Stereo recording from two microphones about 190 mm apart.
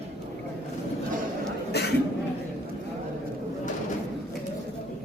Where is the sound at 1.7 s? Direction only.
60° left (ahead or behind).